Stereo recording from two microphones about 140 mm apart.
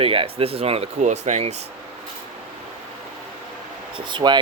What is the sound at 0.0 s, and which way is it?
Speech, 40° right (ahead or behind).